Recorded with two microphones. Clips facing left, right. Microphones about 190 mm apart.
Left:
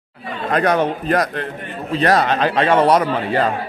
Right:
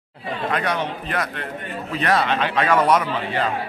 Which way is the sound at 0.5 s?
45° left (ahead or behind).